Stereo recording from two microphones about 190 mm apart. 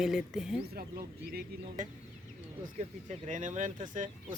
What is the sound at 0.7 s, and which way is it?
Speech, 55° right (ahead or behind).